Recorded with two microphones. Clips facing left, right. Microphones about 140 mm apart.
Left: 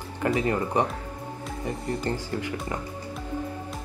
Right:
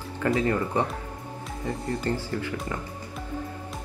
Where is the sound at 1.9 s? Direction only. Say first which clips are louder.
Right 1 dB; 15° left (ahead or behind).